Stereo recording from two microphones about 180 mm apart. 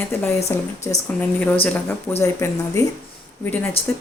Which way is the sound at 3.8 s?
35° left (ahead or behind).